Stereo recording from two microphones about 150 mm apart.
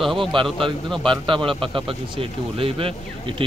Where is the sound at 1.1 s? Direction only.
35° right (ahead or behind).